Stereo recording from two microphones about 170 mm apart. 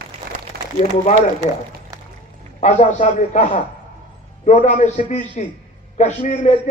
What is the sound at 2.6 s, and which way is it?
A man's voice, 45° left (ahead or behind).